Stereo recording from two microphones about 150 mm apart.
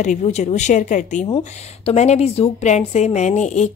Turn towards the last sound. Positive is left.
turn(degrees=50)  # may be behind; listen again after turning